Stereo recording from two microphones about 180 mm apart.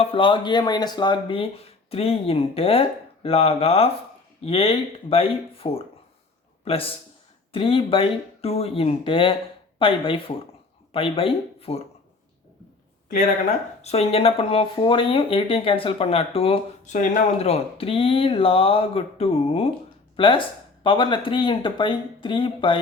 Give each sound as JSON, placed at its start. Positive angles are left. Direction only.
{"t": 0.0, "sound": "speech", "side_deg": 30}
{"t": 13.8, "sound": "speech", "side_deg": 35}